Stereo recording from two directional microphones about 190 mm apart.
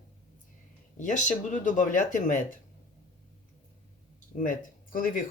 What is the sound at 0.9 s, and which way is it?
Speech, 40° left (ahead or behind).